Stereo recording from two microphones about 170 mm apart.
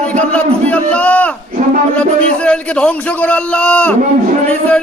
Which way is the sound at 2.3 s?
5° left (ahead or behind).